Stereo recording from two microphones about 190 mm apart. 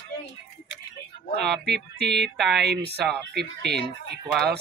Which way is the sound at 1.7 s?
60° right (ahead or behind).